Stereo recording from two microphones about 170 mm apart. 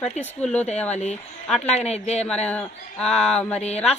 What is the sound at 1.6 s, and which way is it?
Speech, 40° left (ahead or behind).